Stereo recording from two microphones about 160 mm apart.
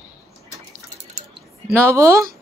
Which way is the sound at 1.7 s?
20° right (ahead or behind).